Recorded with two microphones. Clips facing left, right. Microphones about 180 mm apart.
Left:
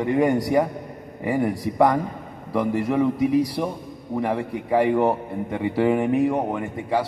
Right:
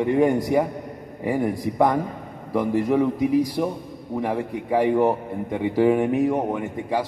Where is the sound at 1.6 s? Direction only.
15° right (ahead or behind).